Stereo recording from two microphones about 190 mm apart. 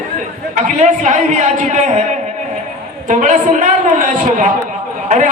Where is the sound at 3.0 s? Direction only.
40° right (ahead or behind).